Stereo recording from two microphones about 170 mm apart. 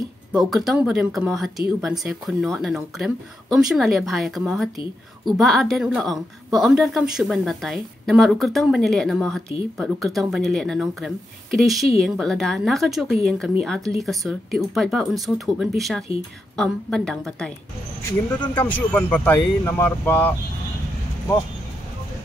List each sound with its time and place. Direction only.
0.3 s a woman's voice: centre (ahead or behind)
18.5 s speech: 10° left (ahead or behind)